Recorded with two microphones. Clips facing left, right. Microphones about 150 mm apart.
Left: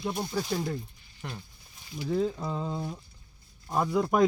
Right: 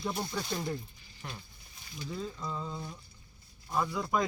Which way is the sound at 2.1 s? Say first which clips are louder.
Left 10 dB; 60° left (ahead or behind).